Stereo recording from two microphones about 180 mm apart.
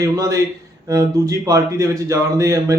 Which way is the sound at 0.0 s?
20° right (ahead or behind).